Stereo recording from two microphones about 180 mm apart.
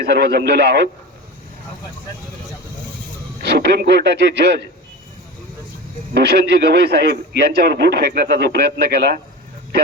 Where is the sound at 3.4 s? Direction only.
65° right (ahead or behind).